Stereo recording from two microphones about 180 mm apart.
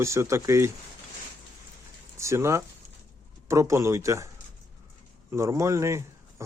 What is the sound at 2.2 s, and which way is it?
Speech, 15° right (ahead or behind).